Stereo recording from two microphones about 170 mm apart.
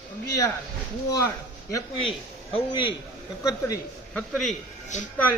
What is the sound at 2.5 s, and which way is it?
A man's voice, 30° left (ahead or behind).